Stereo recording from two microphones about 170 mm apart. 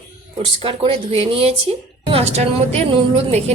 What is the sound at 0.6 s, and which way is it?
A woman's voice, 35° right (ahead or behind).